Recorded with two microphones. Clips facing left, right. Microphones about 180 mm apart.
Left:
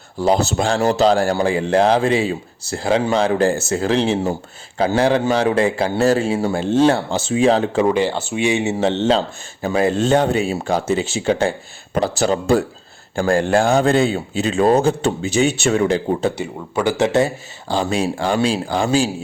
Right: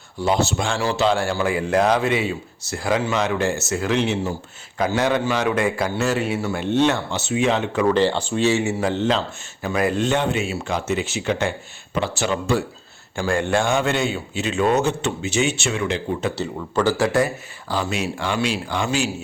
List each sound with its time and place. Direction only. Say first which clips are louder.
0.3 s a man's voice: left 4 dB; 35° left (ahead or behind)
7.9 s a man's voice: even; 10° left (ahead or behind); by 16.3 s 40° left (ahead or behind)
16.4 s a man's voice: left 1 dB; 15° left (ahead or behind); by 19.1 s 35° left (ahead or behind)